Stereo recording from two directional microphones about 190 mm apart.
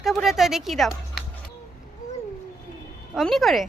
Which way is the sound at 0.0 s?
Centre (ahead or behind).